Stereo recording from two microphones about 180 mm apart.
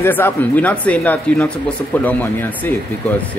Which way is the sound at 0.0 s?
10° left (ahead or behind).